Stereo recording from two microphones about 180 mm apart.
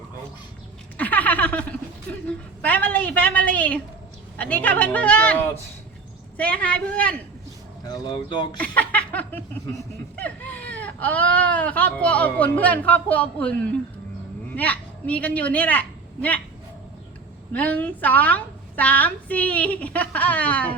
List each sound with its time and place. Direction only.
0.9 s a sound: 10° left (ahead or behind)
2.6 s speech: 10° left (ahead or behind)
7.9 s speech: 25° left (ahead or behind)
8.5 s a woman's voice: 5° left (ahead or behind)
17.5 s speech: 10° left (ahead or behind)